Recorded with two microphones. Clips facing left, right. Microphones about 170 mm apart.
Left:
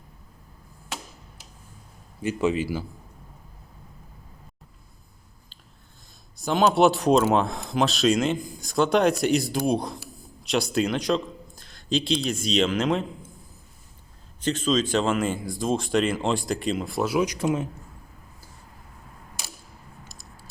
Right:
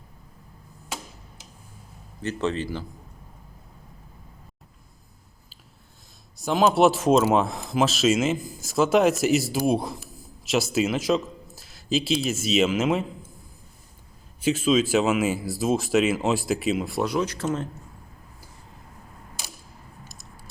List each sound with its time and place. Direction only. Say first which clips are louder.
2.2 s a man's voice: left 3 dB; 10° left (ahead or behind)
6.3 s speech: even; centre (ahead or behind)
14.4 s speech: right 3 dB; 5° right (ahead or behind); by 17.7 s 10° left (ahead or behind)